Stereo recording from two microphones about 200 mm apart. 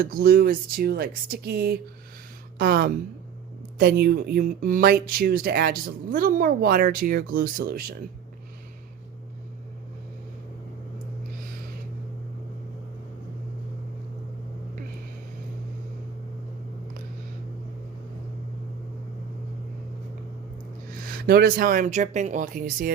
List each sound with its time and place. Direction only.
0.0 s speech: 45° right (ahead or behind)
21.0 s speech: 50° right (ahead or behind)